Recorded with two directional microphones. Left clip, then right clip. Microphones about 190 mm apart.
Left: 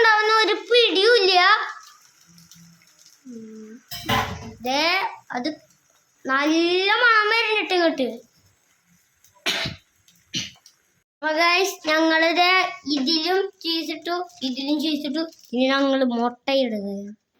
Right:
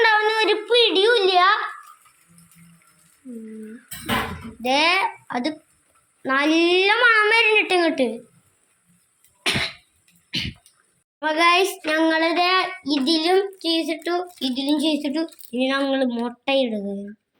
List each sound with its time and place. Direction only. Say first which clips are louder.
0.0 s a sound: left 1 dB; centre (ahead or behind)
4.6 s a child's voice: right 3 dB; 15° right (ahead or behind)
9.4 s cough: right 2 dB; 15° right (ahead or behind)
11.2 s speech: right 2 dB; 10° right (ahead or behind)
12.9 s a child's voice: right 5 dB; 20° right (ahead or behind); by 15.3 s 5° right (ahead or behind)
15.4 s speech: left 3 dB; 15° left (ahead or behind)
16.4 s speech: right 5 dB; 5° left (ahead or behind)